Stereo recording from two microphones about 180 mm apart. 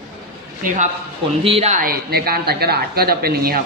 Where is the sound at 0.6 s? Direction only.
45° right (ahead or behind).